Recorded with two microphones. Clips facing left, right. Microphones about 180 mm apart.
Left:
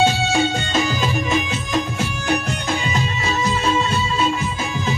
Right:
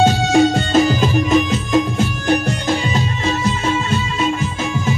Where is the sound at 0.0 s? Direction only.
45° right (ahead or behind).